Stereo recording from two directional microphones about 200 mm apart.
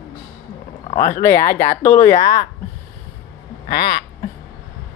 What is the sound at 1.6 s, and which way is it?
Speech, 35° left (ahead or behind).